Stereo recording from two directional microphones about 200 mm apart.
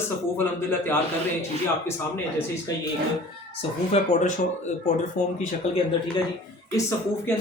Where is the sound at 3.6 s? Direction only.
35° left (ahead or behind).